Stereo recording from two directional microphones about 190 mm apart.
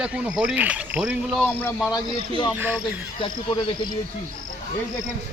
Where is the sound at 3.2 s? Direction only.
25° left (ahead or behind).